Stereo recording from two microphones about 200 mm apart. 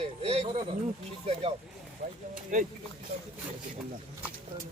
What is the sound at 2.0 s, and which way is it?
Speech, 45° right (ahead or behind).